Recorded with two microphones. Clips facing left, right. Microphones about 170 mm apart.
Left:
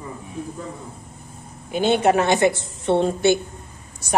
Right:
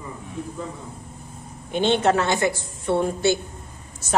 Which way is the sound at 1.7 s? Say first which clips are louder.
Left 2 dB; 10° left (ahead or behind).